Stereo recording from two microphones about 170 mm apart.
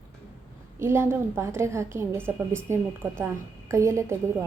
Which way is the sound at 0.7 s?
15° right (ahead or behind).